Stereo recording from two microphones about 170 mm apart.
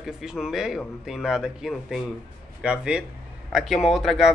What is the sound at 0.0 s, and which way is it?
A man's voice, 5° right (ahead or behind).